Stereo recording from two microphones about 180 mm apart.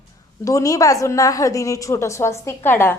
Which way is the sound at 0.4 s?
20° left (ahead or behind).